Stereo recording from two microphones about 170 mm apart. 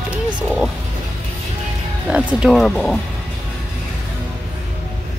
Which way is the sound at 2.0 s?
5° right (ahead or behind).